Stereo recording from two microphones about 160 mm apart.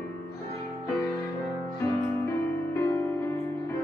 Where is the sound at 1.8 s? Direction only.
15° left (ahead or behind).